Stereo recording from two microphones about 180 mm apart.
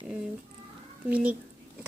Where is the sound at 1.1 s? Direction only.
5° right (ahead or behind).